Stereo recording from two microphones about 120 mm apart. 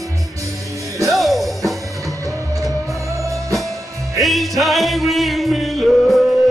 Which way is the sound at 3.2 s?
25° right (ahead or behind).